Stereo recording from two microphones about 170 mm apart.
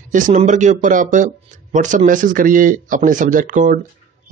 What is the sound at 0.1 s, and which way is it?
Speech, 45° right (ahead or behind).